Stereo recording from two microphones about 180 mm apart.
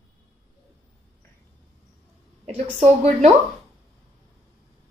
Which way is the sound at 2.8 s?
35° right (ahead or behind).